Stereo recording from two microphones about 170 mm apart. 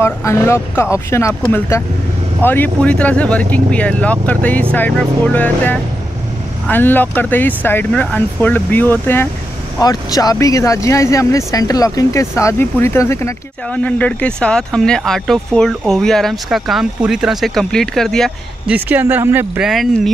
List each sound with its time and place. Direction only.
0.0 s speech: 15° left (ahead or behind)
18.9 s speech: 10° right (ahead or behind)